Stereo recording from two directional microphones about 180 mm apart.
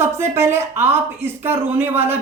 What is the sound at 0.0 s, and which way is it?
Speech, 15° right (ahead or behind).